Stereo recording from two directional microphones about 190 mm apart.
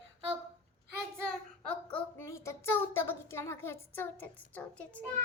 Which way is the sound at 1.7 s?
5° left (ahead or behind).